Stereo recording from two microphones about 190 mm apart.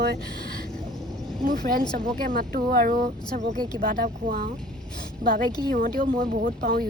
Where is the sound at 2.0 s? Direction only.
50° right (ahead or behind).